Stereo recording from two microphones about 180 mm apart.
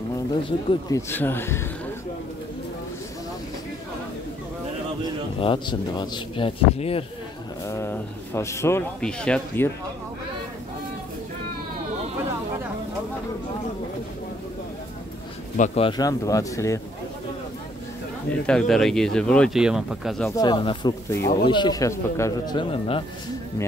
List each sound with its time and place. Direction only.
0.3 s speech: 30° left (ahead or behind)
5.4 s speech: 25° left (ahead or behind)
7.6 s speech: 15° left (ahead or behind)
15.5 s speech: 45° left (ahead or behind)
15.8 s speech: 20° left (ahead or behind)
18.5 s speech: centre (ahead or behind)
20.2 s speech: 20° left (ahead or behind)